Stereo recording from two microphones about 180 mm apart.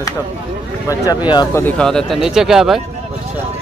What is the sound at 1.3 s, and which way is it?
Speech, 25° left (ahead or behind).